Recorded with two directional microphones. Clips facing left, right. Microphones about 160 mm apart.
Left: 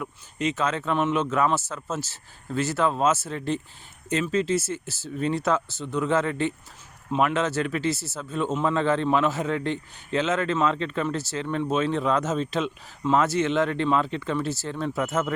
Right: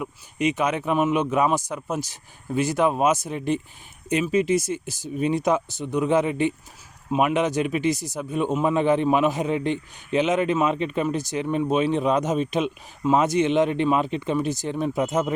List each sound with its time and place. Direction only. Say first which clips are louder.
0.0 s a man's voice: right 4 dB; 15° right (ahead or behind)